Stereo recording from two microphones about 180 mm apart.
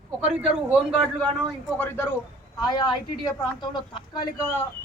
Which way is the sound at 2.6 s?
25° left (ahead or behind).